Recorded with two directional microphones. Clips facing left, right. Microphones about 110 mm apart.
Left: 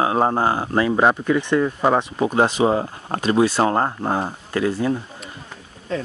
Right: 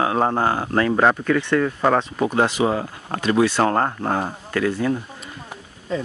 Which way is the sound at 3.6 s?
20° left (ahead or behind).